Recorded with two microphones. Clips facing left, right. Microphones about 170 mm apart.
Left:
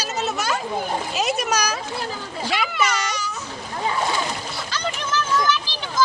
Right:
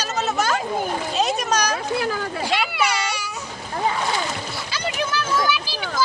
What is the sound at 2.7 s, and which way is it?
Baby cry, 10° right (ahead or behind).